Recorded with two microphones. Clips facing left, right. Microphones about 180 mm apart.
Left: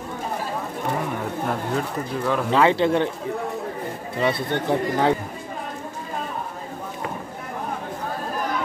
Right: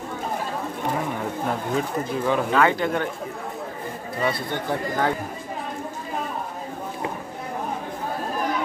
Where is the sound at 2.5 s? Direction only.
25° left (ahead or behind).